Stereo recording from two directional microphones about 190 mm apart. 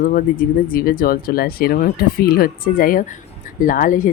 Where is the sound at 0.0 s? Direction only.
50° left (ahead or behind).